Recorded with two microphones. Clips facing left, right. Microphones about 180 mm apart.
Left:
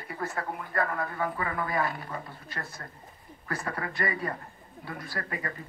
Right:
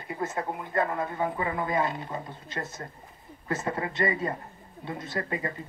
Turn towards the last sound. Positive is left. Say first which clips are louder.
# right 4 dB
turn(degrees=-20)  # may be behind; listen again after turning